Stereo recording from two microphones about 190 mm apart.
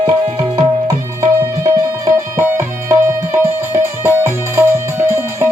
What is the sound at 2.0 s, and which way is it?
Music, 15° right (ahead or behind).